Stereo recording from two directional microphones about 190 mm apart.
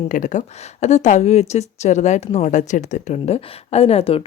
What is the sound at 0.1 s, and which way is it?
Speech, 40° left (ahead or behind).